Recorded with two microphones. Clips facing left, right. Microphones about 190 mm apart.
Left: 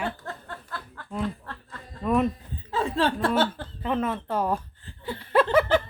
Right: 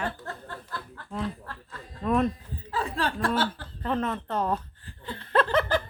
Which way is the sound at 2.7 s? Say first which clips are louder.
Left 5 dB; 25° left (ahead or behind).